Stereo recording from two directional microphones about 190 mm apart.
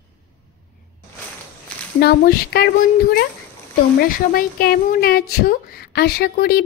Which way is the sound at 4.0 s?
50° left (ahead or behind).